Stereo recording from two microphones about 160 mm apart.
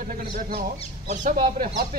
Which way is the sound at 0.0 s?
60° right (ahead or behind).